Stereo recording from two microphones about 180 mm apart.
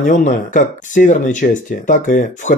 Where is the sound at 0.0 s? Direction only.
45° left (ahead or behind).